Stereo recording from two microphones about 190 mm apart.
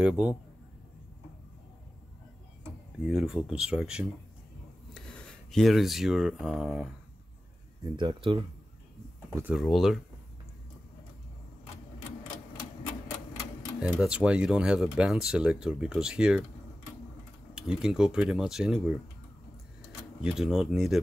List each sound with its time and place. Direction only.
0.0 s speech: 5° right (ahead or behind)
3.0 s speech: 5° right (ahead or behind)
7.8 s speech: 25° right (ahead or behind)
9.3 s speech: 10° right (ahead or behind)
13.7 s speech: 5° right (ahead or behind)
17.6 s speech: 5° right (ahead or behind)
20.2 s speech: 5° right (ahead or behind)